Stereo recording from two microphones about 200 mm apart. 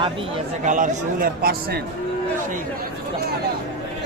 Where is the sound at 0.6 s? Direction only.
40° right (ahead or behind).